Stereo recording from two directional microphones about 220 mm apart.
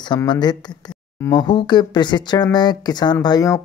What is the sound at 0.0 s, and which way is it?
Speech, 20° left (ahead or behind).